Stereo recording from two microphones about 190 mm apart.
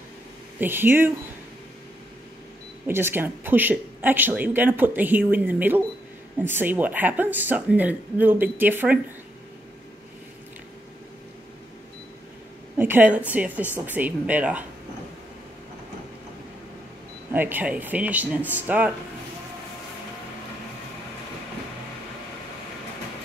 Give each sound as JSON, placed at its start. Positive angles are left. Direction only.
{"t": 0.6, "sound": "speech", "side_deg": -10}
{"t": 2.9, "sound": "speech", "side_deg": -10}
{"t": 12.7, "sound": "a woman's voice", "side_deg": -10}
{"t": 17.3, "sound": "speech", "side_deg": -10}